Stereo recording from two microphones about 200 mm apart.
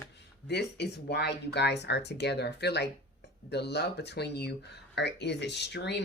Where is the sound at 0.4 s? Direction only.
55° left (ahead or behind).